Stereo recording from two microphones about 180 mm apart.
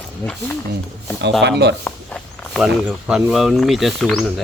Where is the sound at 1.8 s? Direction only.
5° left (ahead or behind).